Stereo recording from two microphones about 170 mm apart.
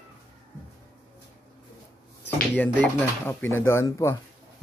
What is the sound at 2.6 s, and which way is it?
Speech, 10° left (ahead or behind).